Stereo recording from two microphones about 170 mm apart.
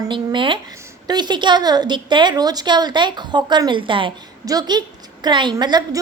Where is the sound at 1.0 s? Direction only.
25° right (ahead or behind).